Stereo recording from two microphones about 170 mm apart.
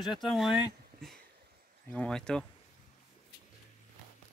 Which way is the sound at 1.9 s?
5° left (ahead or behind).